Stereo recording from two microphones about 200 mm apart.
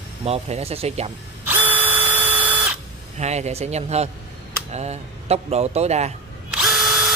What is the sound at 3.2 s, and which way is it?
Speech, 35° right (ahead or behind).